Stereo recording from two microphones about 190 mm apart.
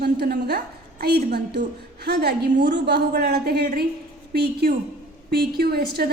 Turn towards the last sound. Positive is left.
turn(degrees=-50)  # may be behind; listen again after turning